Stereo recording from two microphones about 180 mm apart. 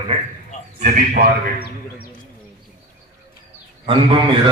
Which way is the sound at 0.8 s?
50° right (ahead or behind).